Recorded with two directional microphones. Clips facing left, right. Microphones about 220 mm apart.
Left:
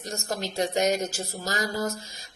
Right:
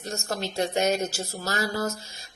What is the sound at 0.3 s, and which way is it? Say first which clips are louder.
Speech: even; 15° left (ahead or behind).